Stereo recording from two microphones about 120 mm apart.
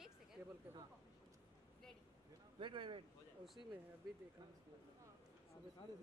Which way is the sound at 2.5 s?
45° right (ahead or behind).